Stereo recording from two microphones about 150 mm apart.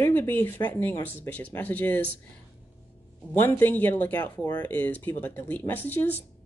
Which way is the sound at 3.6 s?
10° left (ahead or behind).